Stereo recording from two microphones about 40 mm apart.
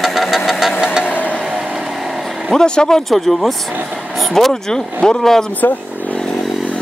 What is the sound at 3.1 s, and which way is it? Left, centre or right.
Speech, centre.